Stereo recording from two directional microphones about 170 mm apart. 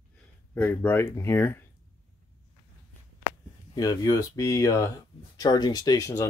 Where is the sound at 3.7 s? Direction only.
20° left (ahead or behind).